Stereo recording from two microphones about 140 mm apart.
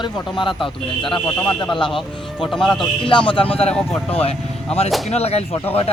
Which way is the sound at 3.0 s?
35° left (ahead or behind).